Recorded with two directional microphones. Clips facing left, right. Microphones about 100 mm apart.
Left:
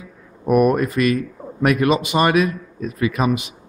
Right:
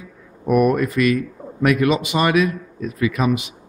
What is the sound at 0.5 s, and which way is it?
Speech, 40° left (ahead or behind).